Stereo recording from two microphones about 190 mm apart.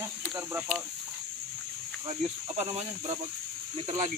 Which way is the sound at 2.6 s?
30° right (ahead or behind).